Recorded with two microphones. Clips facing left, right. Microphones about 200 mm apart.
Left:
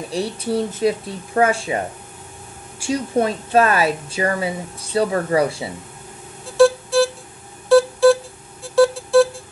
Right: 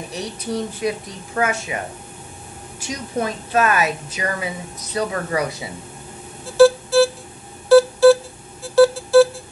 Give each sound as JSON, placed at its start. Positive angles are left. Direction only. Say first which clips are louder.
{"t": 0.1, "sound": "speech", "louder": "left 5 dB", "side_deg": 30}
{"t": 2.8, "sound": "a woman's voice", "louder": "left 6 dB", "side_deg": 30}
{"t": 6.5, "sound": "music", "louder": "right 2 dB", "side_deg": 0}